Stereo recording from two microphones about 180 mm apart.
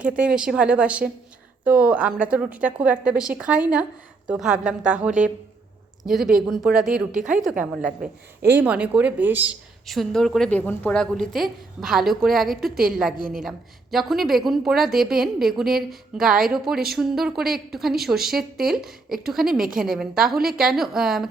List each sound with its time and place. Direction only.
0.0 s a woman's voice: 5° right (ahead or behind)
9.8 s a woman's voice: centre (ahead or behind)
13.1 s a woman's voice: 50° right (ahead or behind)
13.9 s a woman's voice: centre (ahead or behind)